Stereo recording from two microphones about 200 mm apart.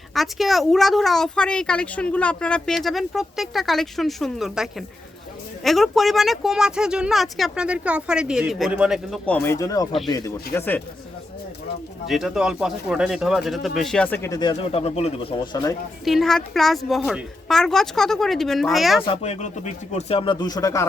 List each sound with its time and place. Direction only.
0.1 s speech: centre (ahead or behind)
12.0 s speech: centre (ahead or behind); by 15.7 s 25° left (ahead or behind)
16.0 s speech: centre (ahead or behind)
19.0 s speech: 30° left (ahead or behind)